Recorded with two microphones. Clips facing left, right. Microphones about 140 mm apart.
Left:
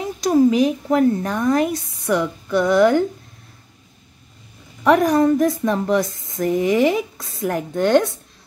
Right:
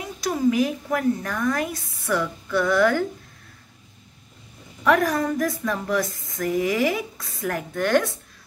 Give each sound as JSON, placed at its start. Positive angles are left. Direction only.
{"t": 0.0, "sound": "speech", "side_deg": 30}
{"t": 4.8, "sound": "speech", "side_deg": 20}